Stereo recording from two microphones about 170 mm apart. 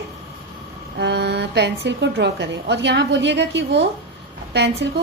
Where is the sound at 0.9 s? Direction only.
80° right.